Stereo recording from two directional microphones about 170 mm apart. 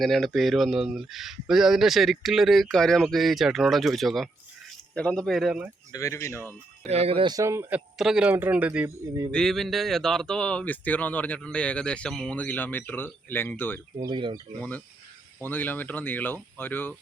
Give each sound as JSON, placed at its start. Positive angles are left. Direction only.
{"t": 0.0, "sound": "speech", "side_deg": 0}
{"t": 5.9, "sound": "speech", "side_deg": 20}
{"t": 6.8, "sound": "speech", "side_deg": -40}
{"t": 7.3, "sound": "speech", "side_deg": -15}
{"t": 7.9, "sound": "speech", "side_deg": -5}
{"t": 9.3, "sound": "speech", "side_deg": 0}
{"t": 14.1, "sound": "speech", "side_deg": -25}
{"t": 15.4, "sound": "speech", "side_deg": 10}